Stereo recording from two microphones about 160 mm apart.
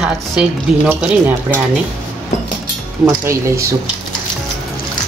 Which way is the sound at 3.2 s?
15° right (ahead or behind).